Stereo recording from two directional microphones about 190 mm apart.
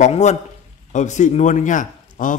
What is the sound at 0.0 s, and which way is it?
A man's voice, 35° left (ahead or behind).